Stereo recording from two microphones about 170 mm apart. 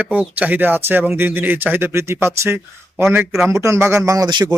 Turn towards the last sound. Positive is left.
turn(degrees=-25)  # may be behind; listen again after turning